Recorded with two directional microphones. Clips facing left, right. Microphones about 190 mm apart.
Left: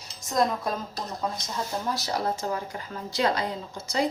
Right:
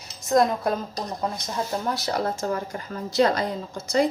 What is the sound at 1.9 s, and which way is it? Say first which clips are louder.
A woman's voice: right 2 dB; 50° right (ahead or behind).